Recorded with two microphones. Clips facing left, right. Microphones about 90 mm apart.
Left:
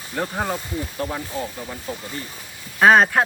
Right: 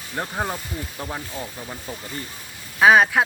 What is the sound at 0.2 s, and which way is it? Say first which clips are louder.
Speech: left 2 dB; 5° right (ahead or behind).